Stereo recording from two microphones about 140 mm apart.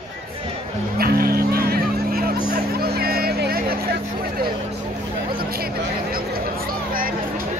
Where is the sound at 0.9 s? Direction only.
90° right.